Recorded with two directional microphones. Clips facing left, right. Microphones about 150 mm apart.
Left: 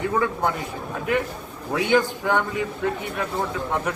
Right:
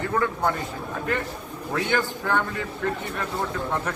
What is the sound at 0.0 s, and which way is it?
A man's voice, 10° left (ahead or behind).